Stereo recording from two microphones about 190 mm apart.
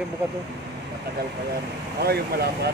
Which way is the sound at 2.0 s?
55° right (ahead or behind).